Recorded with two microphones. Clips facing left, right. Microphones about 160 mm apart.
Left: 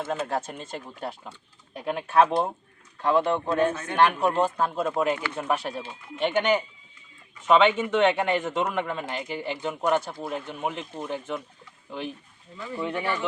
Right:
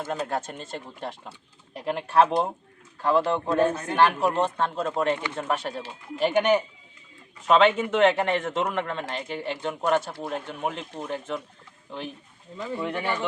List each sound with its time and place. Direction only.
0.3 s speech: centre (ahead or behind)
3.7 s speech: 35° right (ahead or behind)
3.9 s speech: centre (ahead or behind)